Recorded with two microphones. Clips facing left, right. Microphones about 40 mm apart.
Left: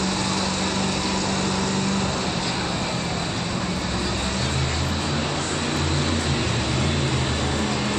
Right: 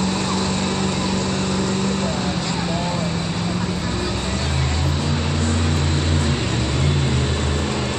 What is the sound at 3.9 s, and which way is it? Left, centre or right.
Vehicle, centre.